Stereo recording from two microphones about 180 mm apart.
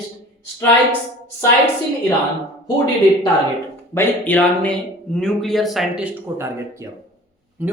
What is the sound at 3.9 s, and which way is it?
Speech, 10° left (ahead or behind).